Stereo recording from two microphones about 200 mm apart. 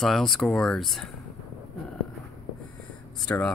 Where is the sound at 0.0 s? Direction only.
Centre (ahead or behind).